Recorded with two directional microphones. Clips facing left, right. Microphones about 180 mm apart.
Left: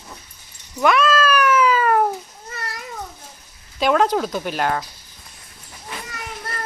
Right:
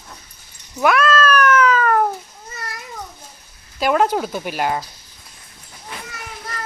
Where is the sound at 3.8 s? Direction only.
5° right (ahead or behind).